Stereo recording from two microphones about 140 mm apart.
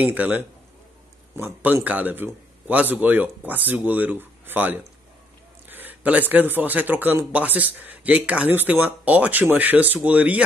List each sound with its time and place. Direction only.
0.0 s speech: 10° right (ahead or behind)